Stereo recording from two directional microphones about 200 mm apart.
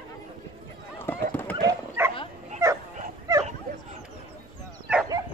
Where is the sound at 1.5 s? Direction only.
15° right (ahead or behind).